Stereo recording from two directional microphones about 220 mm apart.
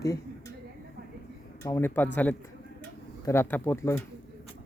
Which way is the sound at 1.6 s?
10° left (ahead or behind).